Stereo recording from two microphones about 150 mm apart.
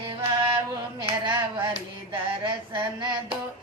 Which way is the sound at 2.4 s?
30° right (ahead or behind).